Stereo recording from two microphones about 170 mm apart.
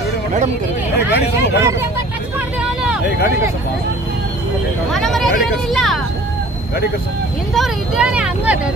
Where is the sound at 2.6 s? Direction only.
5° right (ahead or behind).